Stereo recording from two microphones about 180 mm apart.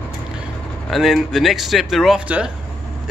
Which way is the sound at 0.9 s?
Centre (ahead or behind).